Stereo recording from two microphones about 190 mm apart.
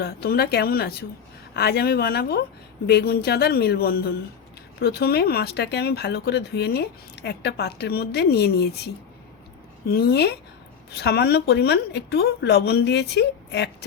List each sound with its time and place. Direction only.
0.0 s speech: 55° left (ahead or behind)
9.9 s speech: 55° left (ahead or behind)